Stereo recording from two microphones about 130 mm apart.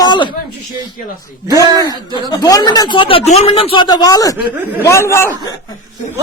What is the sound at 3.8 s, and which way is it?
A man's voice, 30° left (ahead or behind).